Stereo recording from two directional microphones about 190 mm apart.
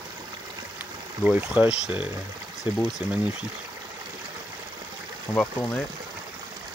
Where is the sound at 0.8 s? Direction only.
10° right (ahead or behind).